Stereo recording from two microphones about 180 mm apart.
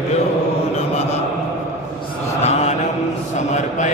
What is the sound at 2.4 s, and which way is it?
Mantra, 40° left (ahead or behind).